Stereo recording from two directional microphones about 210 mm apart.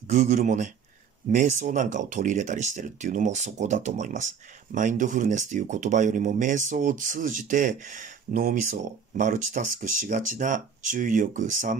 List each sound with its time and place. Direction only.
0.1 s speech: 40° right (ahead or behind)